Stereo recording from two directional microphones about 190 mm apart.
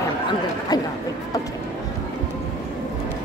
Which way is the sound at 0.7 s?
20° left (ahead or behind).